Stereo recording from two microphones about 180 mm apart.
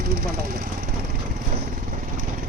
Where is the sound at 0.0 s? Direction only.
60° right (ahead or behind).